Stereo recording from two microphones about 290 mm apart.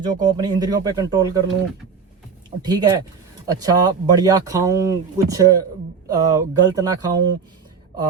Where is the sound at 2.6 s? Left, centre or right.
Centre.